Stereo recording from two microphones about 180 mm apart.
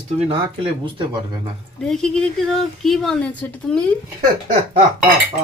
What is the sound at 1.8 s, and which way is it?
Speech, 5° left (ahead or behind).